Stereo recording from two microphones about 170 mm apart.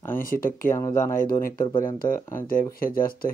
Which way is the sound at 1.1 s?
55° left (ahead or behind).